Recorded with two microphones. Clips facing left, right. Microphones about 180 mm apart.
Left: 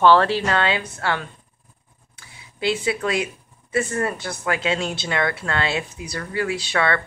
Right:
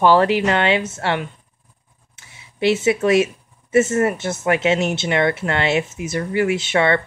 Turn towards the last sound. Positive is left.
turn(degrees=-20)  # may be behind; listen again after turning